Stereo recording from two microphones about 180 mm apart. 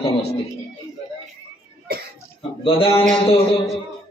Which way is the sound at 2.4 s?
30° left (ahead or behind).